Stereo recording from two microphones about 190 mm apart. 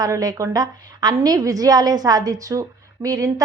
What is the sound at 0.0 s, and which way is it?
A woman's voice, 20° right (ahead or behind).